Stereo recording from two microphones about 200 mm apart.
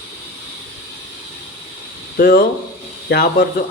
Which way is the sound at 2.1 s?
50° left (ahead or behind).